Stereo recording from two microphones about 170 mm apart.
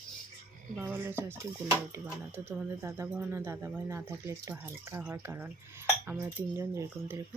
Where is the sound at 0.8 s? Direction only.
10° right (ahead or behind).